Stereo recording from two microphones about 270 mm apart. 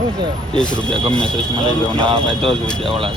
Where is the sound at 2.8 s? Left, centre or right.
Centre.